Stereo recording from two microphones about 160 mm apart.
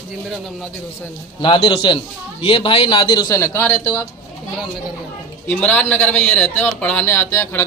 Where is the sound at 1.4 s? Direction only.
30° left (ahead or behind).